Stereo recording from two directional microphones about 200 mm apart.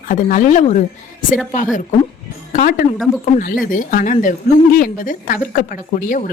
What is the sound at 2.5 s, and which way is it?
A woman's voice, 45° left (ahead or behind).